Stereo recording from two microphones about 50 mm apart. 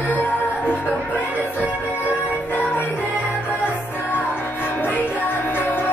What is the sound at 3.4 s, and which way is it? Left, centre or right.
Music, left.